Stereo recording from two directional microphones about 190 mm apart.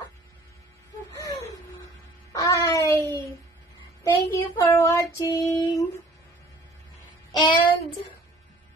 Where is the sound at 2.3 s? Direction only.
15° left (ahead or behind).